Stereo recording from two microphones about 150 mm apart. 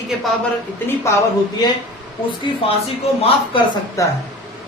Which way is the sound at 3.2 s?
40° left (ahead or behind).